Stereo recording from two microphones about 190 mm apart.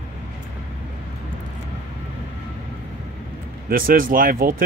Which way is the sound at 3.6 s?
50° right (ahead or behind).